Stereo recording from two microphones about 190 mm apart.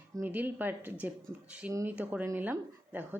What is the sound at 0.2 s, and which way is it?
A woman's voice, 10° right (ahead or behind).